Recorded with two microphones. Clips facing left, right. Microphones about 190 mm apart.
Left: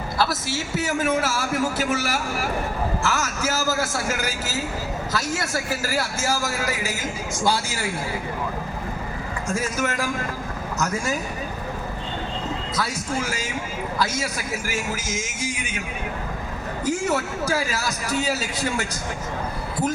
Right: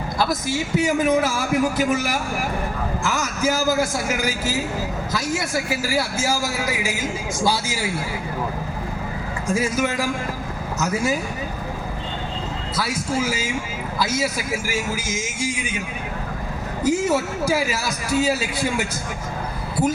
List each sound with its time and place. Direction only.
0.2 s a man's voice: 15° right (ahead or behind)
9.5 s a man's voice: 10° right (ahead or behind)
12.7 s a man's voice: 10° right (ahead or behind)
16.8 s a man's voice: 10° right (ahead or behind)